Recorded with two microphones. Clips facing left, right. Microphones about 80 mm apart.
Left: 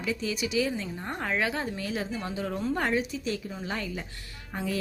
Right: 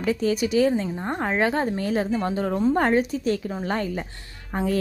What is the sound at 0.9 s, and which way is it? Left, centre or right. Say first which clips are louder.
A woman's voice: right 6 dB; right.